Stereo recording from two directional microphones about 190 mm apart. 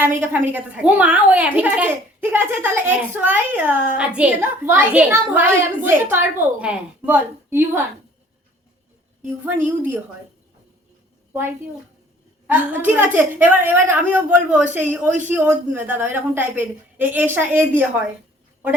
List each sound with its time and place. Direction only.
0.5 s a child's voice: 5° right (ahead or behind)
9.6 s a child's voice: 10° right (ahead or behind)
12.5 s a child's voice: 10° right (ahead or behind)